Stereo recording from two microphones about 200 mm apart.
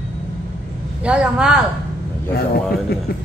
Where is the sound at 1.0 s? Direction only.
5° right (ahead or behind).